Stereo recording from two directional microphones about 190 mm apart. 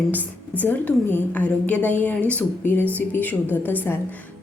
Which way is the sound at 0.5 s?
10° left (ahead or behind).